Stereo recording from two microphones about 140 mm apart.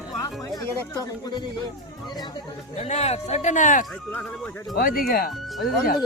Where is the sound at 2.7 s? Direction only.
50° left (ahead or behind).